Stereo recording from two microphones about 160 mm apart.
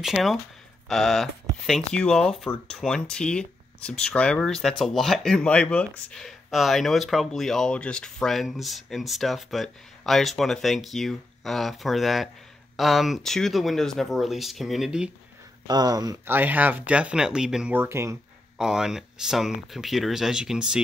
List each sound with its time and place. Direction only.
0.0 s speech: centre (ahead or behind)
15.6 s speech: 25° right (ahead or behind); by 17.7 s 5° right (ahead or behind)
17.7 s speech: 15° right (ahead or behind)
18.6 s speech: 5° right (ahead or behind)